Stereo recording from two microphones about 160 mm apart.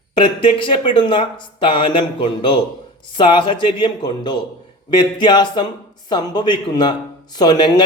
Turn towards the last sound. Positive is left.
turn(degrees=25)  # may be behind; listen again after turning